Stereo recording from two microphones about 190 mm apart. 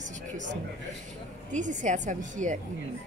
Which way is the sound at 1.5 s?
40° right (ahead or behind).